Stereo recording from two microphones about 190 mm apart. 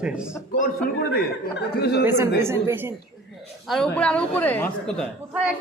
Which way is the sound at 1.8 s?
60° left (ahead or behind).